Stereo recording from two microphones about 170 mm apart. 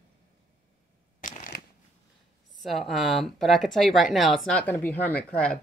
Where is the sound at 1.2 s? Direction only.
50° left (ahead or behind).